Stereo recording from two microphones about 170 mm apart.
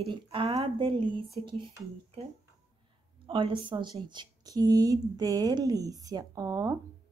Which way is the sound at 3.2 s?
30° right (ahead or behind).